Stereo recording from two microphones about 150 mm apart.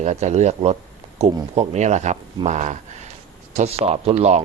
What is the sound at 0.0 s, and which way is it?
Speech, 50° right (ahead or behind).